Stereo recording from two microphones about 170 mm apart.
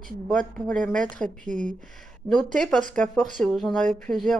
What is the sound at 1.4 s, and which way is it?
Speech, 50° right (ahead or behind).